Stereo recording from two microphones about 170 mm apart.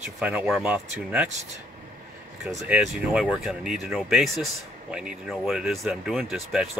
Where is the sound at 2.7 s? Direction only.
5° right (ahead or behind).